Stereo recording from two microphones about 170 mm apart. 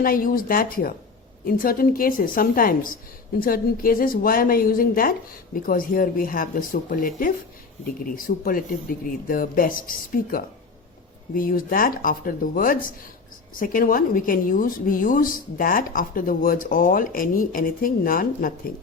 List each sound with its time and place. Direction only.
0.0 s a woman's voice: 55° left (ahead or behind)